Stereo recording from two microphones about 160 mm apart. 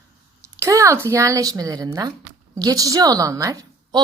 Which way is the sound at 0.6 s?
20° right (ahead or behind).